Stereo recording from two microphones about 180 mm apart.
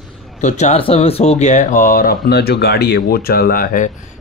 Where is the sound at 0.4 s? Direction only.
40° left (ahead or behind).